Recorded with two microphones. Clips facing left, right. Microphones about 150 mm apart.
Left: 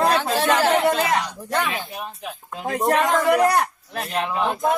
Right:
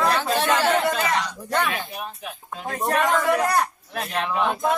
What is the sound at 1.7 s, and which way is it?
Speech, centre (ahead or behind).